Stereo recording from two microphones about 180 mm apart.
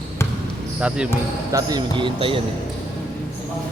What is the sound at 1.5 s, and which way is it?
Speech, 25° right (ahead or behind).